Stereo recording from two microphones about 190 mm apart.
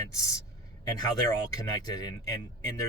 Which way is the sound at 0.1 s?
15° left (ahead or behind).